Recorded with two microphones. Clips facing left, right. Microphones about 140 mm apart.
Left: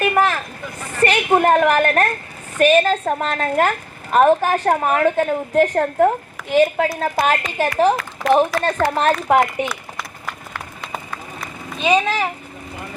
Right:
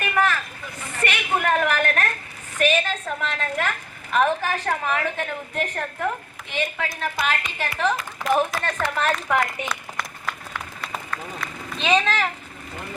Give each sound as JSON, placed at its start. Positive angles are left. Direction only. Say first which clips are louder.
{"t": 0.0, "sound": "vehicle", "louder": "left 5 dB", "side_deg": 35}
{"t": 1.0, "sound": "a woman's voice", "louder": "left 9 dB", "side_deg": 40}
{"t": 9.6, "sound": "run", "louder": "left 2 dB", "side_deg": 5}